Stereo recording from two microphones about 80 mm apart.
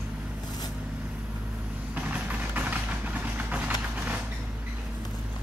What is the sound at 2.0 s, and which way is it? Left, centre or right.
Vehicle, centre.